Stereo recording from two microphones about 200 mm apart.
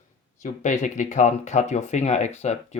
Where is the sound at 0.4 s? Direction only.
40° left (ahead or behind).